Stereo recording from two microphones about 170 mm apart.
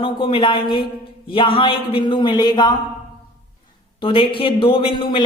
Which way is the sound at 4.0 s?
30° left (ahead or behind).